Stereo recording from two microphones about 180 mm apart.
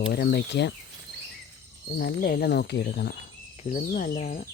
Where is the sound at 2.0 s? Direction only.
55° left (ahead or behind).